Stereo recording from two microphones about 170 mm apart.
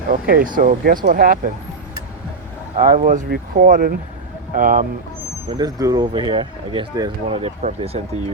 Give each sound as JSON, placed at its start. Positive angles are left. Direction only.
{"t": 0.1, "sound": "speech", "side_deg": -55}
{"t": 2.8, "sound": "speech", "side_deg": -50}
{"t": 5.5, "sound": "speech", "side_deg": -25}